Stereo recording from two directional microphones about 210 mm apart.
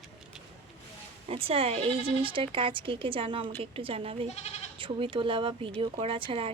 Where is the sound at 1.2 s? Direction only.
25° right (ahead or behind).